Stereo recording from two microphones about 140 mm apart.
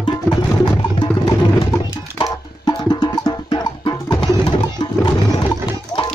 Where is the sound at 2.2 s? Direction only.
30° left (ahead or behind).